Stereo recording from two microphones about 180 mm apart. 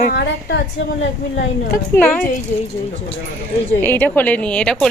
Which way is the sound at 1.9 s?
5° left (ahead or behind).